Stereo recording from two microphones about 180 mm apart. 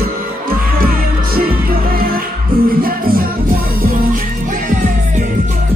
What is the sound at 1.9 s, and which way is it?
Music, 55° right (ahead or behind).